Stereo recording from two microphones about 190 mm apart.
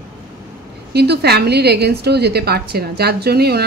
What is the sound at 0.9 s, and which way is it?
A woman's voice, 60° right (ahead or behind).